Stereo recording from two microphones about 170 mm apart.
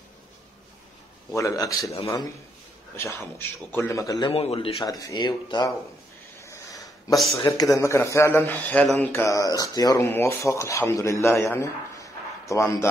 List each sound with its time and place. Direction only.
1.3 s speech: 20° left (ahead or behind)
3.0 s speech: 15° left (ahead or behind)
4.3 s speech: 35° left (ahead or behind)
6.4 s a sound: 20° left (ahead or behind)
7.5 s speech: 20° left (ahead or behind)
9.1 s speech: 15° left (ahead or behind)